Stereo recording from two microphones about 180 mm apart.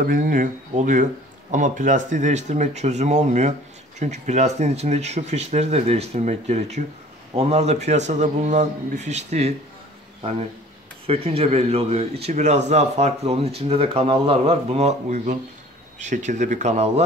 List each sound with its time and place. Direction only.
0.0 s speech: 50° right (ahead or behind)
11.1 s speech: 35° right (ahead or behind)